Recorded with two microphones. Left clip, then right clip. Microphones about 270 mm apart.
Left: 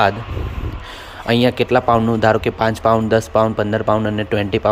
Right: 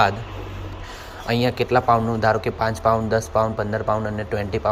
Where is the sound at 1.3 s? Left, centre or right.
Left.